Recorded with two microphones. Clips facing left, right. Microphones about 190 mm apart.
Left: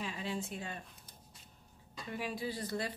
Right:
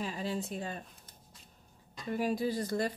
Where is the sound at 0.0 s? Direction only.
40° right (ahead or behind).